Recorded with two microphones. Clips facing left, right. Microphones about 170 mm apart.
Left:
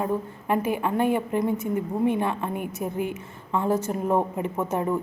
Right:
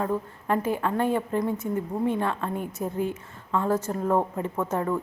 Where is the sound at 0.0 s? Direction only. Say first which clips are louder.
Left 1 dB; 15° left (ahead or behind).